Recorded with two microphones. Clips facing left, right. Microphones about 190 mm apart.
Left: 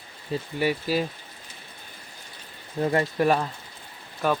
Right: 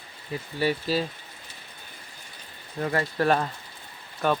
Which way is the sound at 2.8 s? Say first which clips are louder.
Left 4 dB; 25° left (ahead or behind).